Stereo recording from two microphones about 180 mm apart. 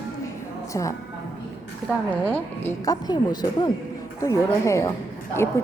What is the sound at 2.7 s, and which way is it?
A woman's voice, 20° left (ahead or behind).